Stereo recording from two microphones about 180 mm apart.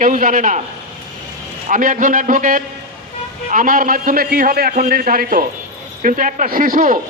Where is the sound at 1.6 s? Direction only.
45° right (ahead or behind).